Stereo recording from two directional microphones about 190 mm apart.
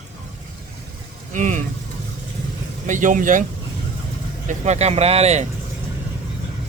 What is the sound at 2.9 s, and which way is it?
Speech, 40° right (ahead or behind).